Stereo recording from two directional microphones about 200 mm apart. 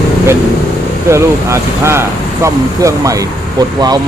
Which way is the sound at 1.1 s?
15° right (ahead or behind).